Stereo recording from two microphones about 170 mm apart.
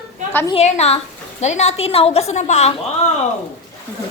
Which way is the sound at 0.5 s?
40° left (ahead or behind).